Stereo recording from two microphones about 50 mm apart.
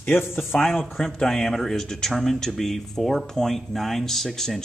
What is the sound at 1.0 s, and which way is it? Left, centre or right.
Speech, centre.